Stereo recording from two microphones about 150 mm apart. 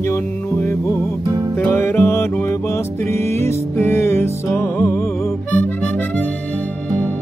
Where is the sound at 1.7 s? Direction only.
20° left (ahead or behind).